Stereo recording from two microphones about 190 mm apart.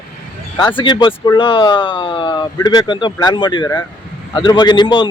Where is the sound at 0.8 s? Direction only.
25° left (ahead or behind).